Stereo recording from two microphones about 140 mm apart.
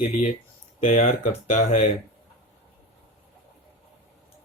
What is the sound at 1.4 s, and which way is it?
Speech, 50° left (ahead or behind).